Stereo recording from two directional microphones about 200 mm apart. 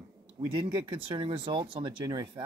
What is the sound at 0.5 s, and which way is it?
Speech, 25° right (ahead or behind).